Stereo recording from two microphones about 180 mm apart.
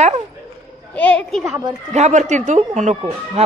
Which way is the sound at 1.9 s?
40° right (ahead or behind).